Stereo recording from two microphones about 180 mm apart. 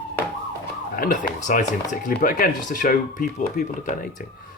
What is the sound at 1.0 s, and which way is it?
Speech, 50° left (ahead or behind).